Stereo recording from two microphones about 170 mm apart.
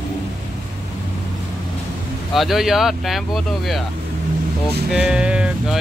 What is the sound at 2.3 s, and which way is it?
Speech, centre (ahead or behind).